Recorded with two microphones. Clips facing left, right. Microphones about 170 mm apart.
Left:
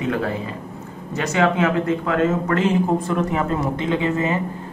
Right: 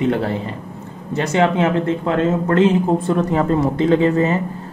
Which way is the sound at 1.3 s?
30° right (ahead or behind).